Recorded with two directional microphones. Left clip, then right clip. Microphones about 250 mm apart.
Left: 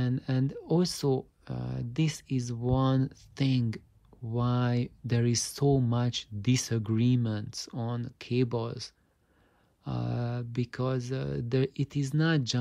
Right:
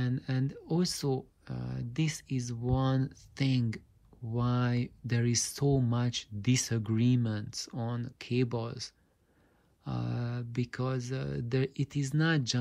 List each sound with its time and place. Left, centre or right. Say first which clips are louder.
0.0 s speech: left 3 dB; centre